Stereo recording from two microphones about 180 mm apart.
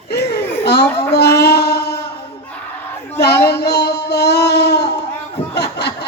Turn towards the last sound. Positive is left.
turn(degrees=65)  # may be behind; listen again after turning